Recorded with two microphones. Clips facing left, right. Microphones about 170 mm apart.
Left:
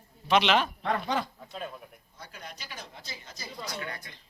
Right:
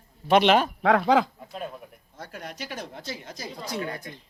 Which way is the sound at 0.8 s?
90° right.